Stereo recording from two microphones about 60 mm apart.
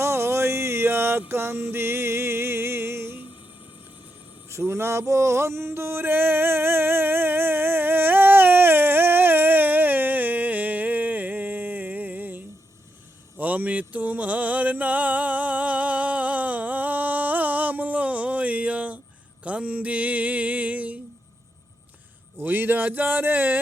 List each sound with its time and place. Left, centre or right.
0.0 s music: right
4.4 s a sound: right
19.5 s music: right
22.4 s speech: right